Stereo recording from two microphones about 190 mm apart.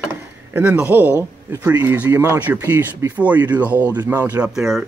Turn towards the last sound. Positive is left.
turn(degrees=0)  # may be behind; listen again after turning